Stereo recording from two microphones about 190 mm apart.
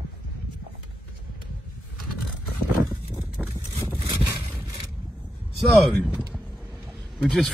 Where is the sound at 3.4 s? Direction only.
5° right (ahead or behind).